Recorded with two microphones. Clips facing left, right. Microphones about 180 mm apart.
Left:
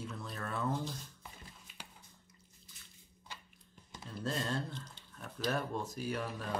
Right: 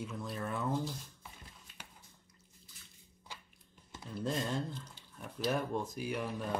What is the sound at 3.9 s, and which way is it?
Speech, 15° right (ahead or behind).